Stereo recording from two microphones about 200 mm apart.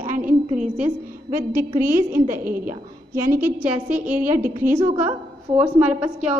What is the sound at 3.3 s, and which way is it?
A woman's voice, 10° right (ahead or behind).